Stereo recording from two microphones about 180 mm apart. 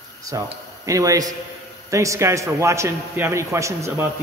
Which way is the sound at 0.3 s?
15° right (ahead or behind).